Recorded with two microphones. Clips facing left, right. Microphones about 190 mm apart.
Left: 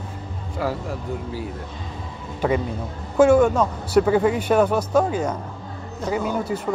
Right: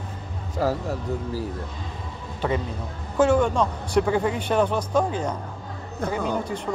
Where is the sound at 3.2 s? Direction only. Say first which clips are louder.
Left 4 dB; 10° left (ahead or behind).